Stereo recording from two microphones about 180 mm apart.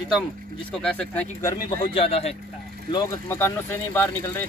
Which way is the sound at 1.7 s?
30° left (ahead or behind).